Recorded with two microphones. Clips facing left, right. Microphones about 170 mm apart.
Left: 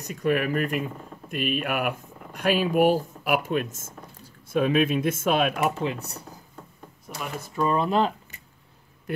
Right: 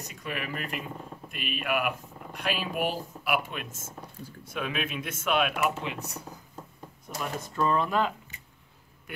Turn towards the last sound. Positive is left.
turn(degrees=20)  # may be behind; listen again after turning